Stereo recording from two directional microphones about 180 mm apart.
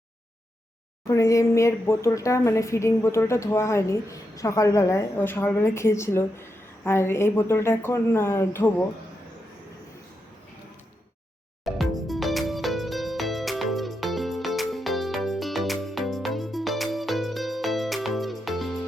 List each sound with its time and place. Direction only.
1.0 s a woman's voice: 15° left (ahead or behind)
11.6 s music: centre (ahead or behind)